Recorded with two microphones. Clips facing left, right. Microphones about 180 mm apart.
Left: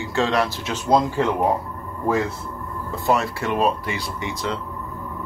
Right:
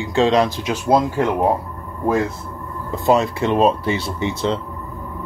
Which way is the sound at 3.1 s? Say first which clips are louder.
Right 5 dB; 20° right (ahead or behind).